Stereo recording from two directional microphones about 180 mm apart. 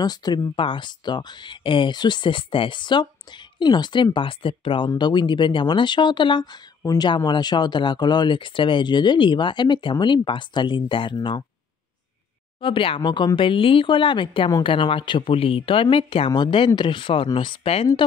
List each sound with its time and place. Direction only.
0.0 s speech: 25° left (ahead or behind)
12.5 s speech: 30° left (ahead or behind)